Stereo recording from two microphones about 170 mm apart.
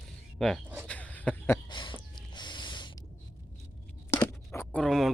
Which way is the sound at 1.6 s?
25° left (ahead or behind).